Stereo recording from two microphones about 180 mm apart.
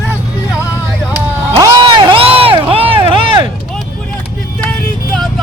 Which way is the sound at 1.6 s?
25° right (ahead or behind).